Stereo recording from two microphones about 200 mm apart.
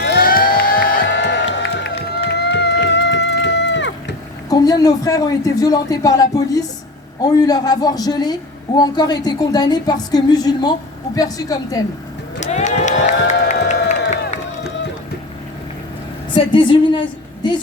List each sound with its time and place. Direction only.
0.0 s music: 50° left (ahead or behind)
4.4 s a man's voice: 20° left (ahead or behind)
12.4 s speech: 35° left (ahead or behind)
13.1 s a sound: 35° left (ahead or behind)
16.3 s a woman's voice: 25° left (ahead or behind)